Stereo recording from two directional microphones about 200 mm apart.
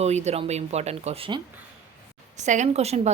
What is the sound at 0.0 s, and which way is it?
A woman's voice, 35° right (ahead or behind).